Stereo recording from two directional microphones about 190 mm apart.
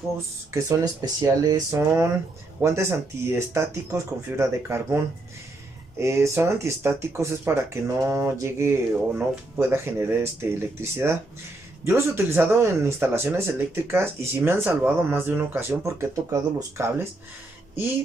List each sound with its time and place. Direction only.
0.5 s speech: 15° right (ahead or behind)